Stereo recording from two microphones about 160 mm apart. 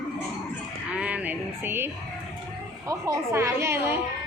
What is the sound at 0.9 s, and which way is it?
Music, 10° right (ahead or behind).